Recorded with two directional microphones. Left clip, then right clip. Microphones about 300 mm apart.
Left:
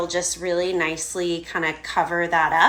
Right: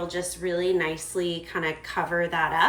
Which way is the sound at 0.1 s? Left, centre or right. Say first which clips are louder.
Left 5 dB; centre.